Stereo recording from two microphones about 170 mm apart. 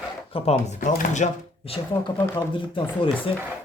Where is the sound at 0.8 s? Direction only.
50° left (ahead or behind).